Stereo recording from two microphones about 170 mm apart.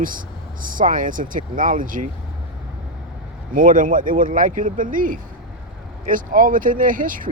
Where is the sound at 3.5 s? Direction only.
50° right (ahead or behind).